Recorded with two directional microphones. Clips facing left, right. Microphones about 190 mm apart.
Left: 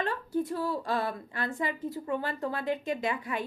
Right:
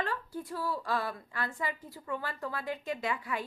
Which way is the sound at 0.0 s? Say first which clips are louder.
Left 6 dB; 20° left (ahead or behind).